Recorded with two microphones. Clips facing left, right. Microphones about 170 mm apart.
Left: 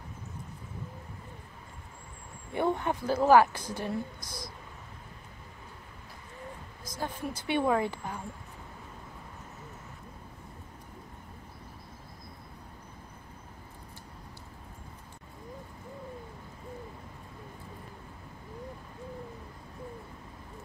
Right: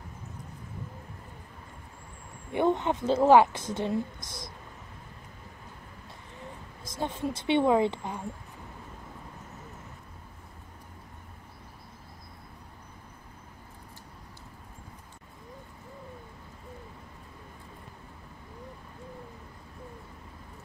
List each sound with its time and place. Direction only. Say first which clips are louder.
2.5 s a woman's voice: right 3 dB; 20° right (ahead or behind)
6.8 s a woman's voice: right 4 dB; 25° right (ahead or behind)